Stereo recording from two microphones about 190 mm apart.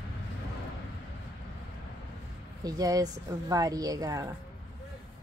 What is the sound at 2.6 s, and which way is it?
Speech, 20° right (ahead or behind).